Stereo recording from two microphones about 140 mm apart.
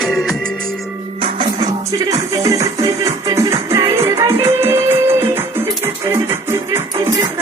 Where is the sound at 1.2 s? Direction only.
30° right (ahead or behind).